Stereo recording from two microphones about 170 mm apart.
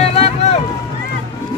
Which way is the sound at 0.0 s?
35° left (ahead or behind).